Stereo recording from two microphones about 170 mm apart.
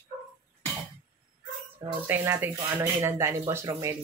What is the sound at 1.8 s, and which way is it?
Speech, 10° right (ahead or behind).